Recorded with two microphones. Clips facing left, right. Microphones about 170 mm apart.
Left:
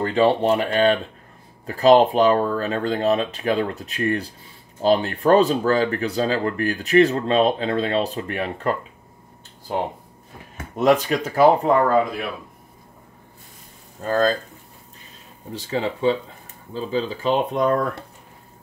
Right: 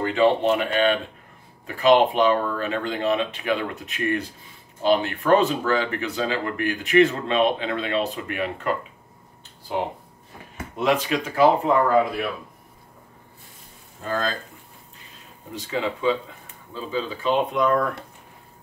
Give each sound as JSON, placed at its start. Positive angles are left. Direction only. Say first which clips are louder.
{"t": 0.0, "sound": "speech", "louder": "left 1 dB", "side_deg": 35}
{"t": 15.7, "sound": "speech", "louder": "left 2 dB", "side_deg": 40}